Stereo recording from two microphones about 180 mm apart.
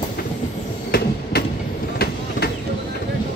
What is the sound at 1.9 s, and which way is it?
Vehicle, 60° left (ahead or behind).